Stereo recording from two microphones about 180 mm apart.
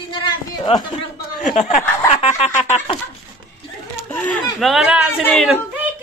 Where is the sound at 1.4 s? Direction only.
40° left (ahead or behind).